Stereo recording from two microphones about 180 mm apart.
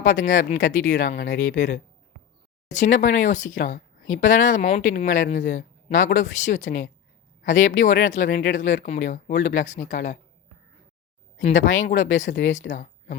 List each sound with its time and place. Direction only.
0.0 s speech: 45° left (ahead or behind)
11.4 s speech: 45° left (ahead or behind)